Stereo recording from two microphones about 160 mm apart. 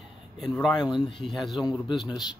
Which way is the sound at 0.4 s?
Centre (ahead or behind).